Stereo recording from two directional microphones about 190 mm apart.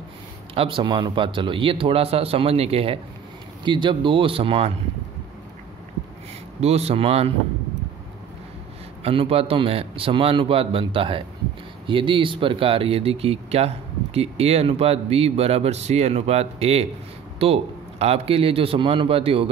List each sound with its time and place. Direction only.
0.6 s a man's voice: 25° right (ahead or behind)
6.6 s speech: 35° right (ahead or behind)
9.0 s a man's voice: 30° right (ahead or behind)